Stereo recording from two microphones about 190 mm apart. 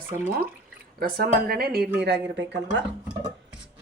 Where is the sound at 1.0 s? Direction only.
50° right (ahead or behind).